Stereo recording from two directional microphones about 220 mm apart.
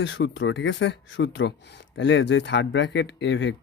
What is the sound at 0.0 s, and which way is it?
Speech, 55° left (ahead or behind).